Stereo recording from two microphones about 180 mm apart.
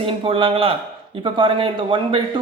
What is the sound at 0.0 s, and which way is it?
Speech, 30° right (ahead or behind).